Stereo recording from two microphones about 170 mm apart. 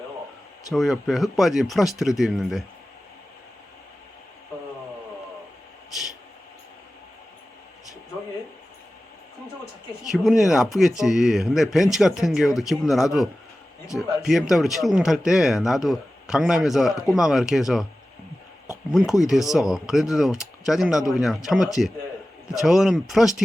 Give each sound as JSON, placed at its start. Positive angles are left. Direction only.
{"t": 0.7, "sound": "speech", "side_deg": 0}
{"t": 10.0, "sound": "speech", "side_deg": 0}
{"t": 13.8, "sound": "speech", "side_deg": 20}
{"t": 14.2, "sound": "speech", "side_deg": 0}
{"t": 19.5, "sound": "speech", "side_deg": 0}